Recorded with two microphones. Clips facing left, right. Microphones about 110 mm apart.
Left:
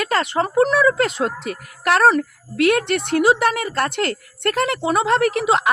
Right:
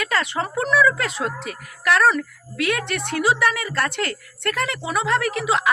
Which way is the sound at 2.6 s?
50° left (ahead or behind).